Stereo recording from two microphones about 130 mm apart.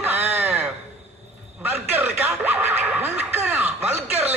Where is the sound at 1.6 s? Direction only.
15° right (ahead or behind).